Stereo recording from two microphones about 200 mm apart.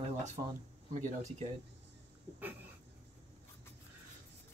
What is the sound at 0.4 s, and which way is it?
Speech, 25° right (ahead or behind).